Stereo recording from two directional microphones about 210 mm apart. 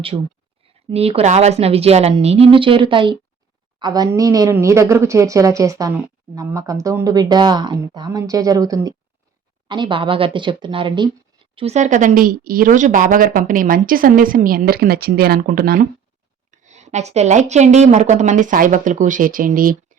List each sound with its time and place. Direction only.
0.9 s a woman's voice: 30° right (ahead or behind); by 15.9 s 45° right (ahead or behind)
16.5 s speech: 35° right (ahead or behind)